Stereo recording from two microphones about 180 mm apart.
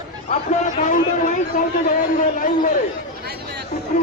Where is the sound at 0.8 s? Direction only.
45° left (ahead or behind).